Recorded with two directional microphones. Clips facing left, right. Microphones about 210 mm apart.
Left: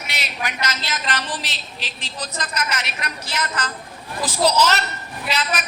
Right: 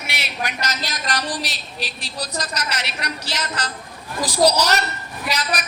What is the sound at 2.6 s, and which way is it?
Speech, 70° right (ahead or behind).